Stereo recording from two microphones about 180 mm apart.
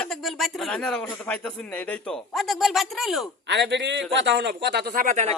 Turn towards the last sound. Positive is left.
turn(degrees=-40)  # may be behind; listen again after turning